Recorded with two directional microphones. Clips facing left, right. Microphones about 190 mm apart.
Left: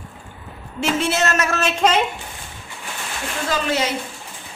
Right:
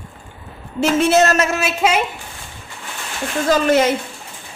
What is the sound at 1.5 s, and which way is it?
Speech, 10° right (ahead or behind).